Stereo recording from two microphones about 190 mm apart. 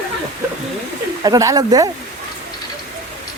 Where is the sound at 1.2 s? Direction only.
20° right (ahead or behind).